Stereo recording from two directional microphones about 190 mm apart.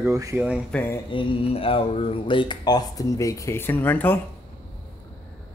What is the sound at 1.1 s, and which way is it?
Speech, 25° left (ahead or behind).